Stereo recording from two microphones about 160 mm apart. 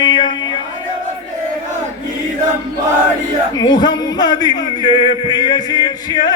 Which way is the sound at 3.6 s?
25° left (ahead or behind).